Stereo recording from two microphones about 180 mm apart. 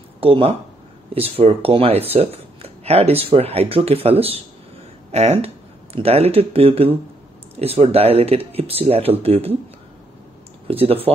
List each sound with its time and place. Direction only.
0.2 s speech: 30° right (ahead or behind)
10.7 s speech: 30° right (ahead or behind)